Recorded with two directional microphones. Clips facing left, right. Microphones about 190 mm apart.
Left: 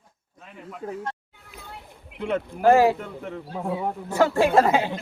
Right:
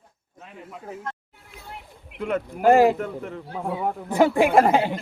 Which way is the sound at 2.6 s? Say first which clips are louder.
Right 1 dB; 15° right (ahead or behind).